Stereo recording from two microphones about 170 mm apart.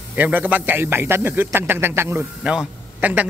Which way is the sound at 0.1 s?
10° right (ahead or behind).